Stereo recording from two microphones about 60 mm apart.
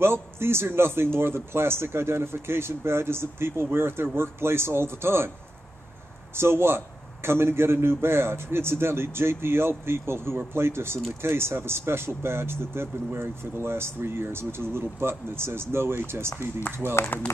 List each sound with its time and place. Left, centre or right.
0.0 s speech: right
6.3 s a man's voice: right